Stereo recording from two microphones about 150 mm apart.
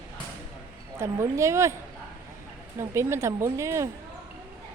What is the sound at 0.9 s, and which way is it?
Speech, 20° right (ahead or behind).